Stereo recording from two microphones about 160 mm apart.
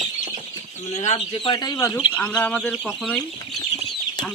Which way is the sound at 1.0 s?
45° left (ahead or behind).